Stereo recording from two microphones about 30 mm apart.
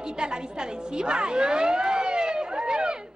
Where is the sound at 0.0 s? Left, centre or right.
Right.